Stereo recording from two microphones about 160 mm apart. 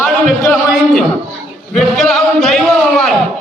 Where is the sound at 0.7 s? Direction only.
Centre (ahead or behind).